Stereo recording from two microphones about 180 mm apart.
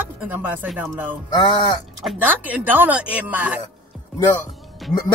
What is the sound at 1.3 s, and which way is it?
Speech, 25° left (ahead or behind).